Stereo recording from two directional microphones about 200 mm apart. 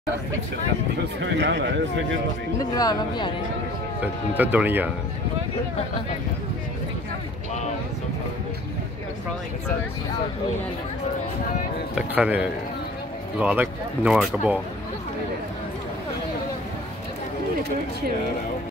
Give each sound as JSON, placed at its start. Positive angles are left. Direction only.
{"t": 1.2, "sound": "a man's voice", "side_deg": -60}
{"t": 2.7, "sound": "speech", "side_deg": 20}
{"t": 4.0, "sound": "speech", "side_deg": -10}
{"t": 11.9, "sound": "a man's voice", "side_deg": -5}